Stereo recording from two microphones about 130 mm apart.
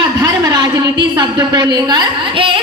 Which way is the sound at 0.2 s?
30° right (ahead or behind).